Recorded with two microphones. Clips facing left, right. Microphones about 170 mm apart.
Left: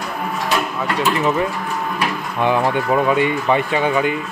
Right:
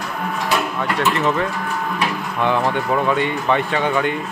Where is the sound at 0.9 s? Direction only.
5° left (ahead or behind).